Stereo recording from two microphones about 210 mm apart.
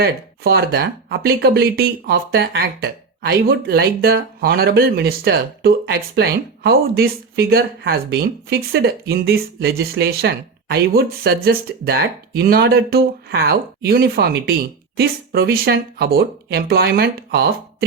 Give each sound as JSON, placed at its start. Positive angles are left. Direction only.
{"t": 0.0, "sound": "speech", "side_deg": -50}